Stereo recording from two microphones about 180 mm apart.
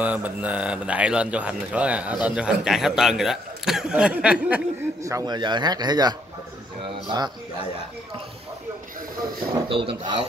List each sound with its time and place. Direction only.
0.0 s a man's voice: 10° right (ahead or behind)
9.5 s speech: 30° right (ahead or behind)